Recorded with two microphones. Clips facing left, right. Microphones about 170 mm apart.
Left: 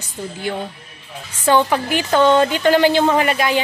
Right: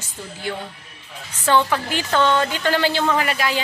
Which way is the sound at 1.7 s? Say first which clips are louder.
Left 4 dB; 15° left (ahead or behind).